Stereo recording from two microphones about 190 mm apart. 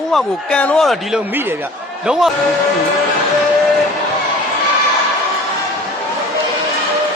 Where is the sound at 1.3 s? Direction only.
10° right (ahead or behind).